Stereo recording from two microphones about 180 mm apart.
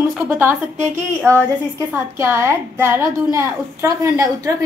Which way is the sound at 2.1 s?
15° right (ahead or behind).